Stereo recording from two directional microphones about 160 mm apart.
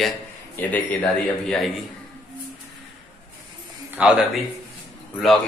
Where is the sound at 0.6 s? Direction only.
15° left (ahead or behind).